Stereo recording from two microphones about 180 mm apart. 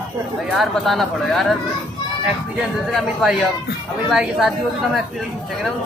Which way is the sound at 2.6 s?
5° right (ahead or behind).